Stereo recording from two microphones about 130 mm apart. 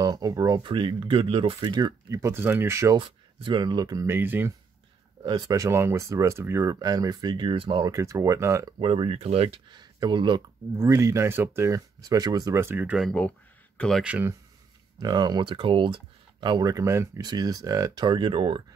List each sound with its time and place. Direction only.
0.0 s speech: 30° right (ahead or behind)
2.1 s speech: 20° right (ahead or behind)
3.0 s speech: 40° right (ahead or behind); by 4.6 s 15° right (ahead or behind)
5.2 s speech: 30° right (ahead or behind)
7.8 s speech: 25° right (ahead or behind)
8.7 s speech: 45° right (ahead or behind)
9.7 s speech: 35° right (ahead or behind)
10.8 s speech: 20° right (ahead or behind)
13.7 s speech: 5° left (ahead or behind)
14.0 s speech: 15° right (ahead or behind)
15.0 s speech: 30° right (ahead or behind)